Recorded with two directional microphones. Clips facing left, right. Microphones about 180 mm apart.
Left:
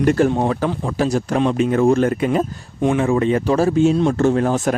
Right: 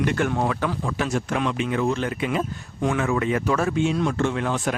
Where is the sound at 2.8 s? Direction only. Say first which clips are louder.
Left 6 dB; 25° left (ahead or behind).